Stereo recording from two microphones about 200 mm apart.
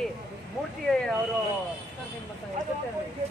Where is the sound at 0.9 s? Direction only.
5° left (ahead or behind).